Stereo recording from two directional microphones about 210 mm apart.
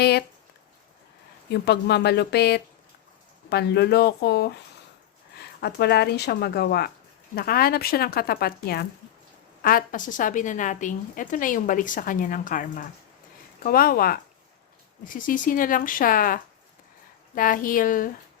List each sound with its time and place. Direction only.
0.0 s speech: 50° left (ahead or behind)
1.5 s a woman's voice: 50° left (ahead or behind)